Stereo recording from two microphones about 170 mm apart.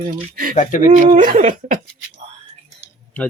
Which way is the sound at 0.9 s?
50° right (ahead or behind).